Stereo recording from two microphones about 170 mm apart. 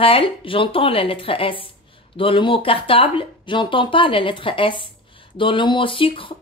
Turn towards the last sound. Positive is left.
turn(degrees=30)  # may be behind; listen again after turning